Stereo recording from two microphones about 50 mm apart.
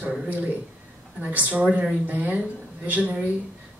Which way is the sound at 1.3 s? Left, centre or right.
Right.